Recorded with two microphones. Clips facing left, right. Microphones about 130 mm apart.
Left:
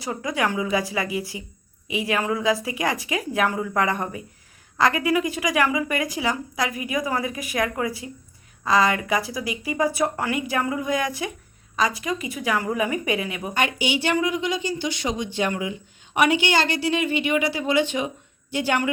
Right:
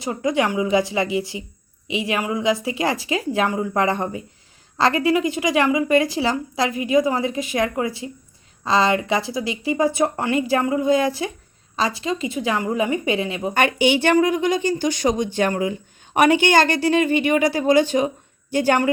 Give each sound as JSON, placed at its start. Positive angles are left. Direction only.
{"t": 0.0, "sound": "a woman's voice", "side_deg": -25}
{"t": 13.5, "sound": "a woman's voice", "side_deg": -55}